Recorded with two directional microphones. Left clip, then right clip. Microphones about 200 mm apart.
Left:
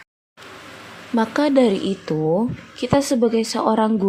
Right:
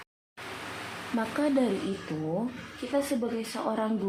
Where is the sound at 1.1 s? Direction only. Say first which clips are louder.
Left 11 dB; 40° left (ahead or behind).